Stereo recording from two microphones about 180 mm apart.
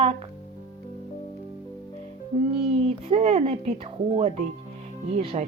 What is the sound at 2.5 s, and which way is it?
Speech, 35° right (ahead or behind).